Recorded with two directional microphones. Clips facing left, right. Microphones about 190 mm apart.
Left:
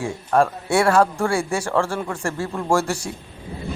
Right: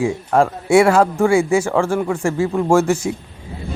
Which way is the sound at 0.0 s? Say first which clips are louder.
Right 3 dB; 25° right (ahead or behind).